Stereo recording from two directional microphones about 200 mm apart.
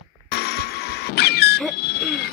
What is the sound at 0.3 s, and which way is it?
Music, 55° left (ahead or behind).